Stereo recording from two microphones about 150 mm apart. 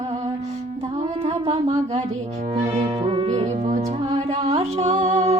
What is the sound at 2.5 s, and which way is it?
Music, 45° right (ahead or behind).